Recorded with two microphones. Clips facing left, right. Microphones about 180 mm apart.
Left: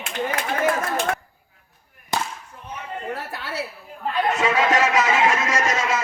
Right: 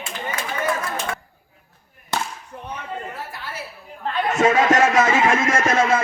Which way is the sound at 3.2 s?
70° left (ahead or behind).